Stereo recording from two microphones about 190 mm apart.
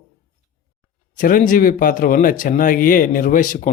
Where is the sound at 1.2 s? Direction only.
45° left (ahead or behind).